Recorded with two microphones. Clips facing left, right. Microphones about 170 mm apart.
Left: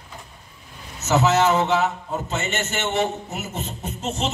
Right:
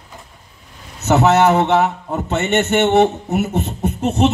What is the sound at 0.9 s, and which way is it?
A man's voice, 60° right (ahead or behind).